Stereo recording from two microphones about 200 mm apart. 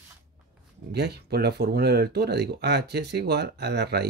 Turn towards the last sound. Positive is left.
turn(degrees=-55)  # may be behind; listen again after turning